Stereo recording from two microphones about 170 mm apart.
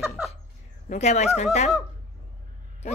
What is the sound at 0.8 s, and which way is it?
Speech, 40° left (ahead or behind).